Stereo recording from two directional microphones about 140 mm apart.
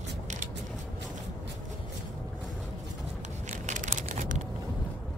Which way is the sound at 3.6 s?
65° right (ahead or behind).